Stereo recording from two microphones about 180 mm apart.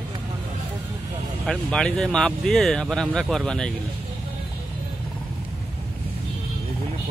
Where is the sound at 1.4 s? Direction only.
5° left (ahead or behind).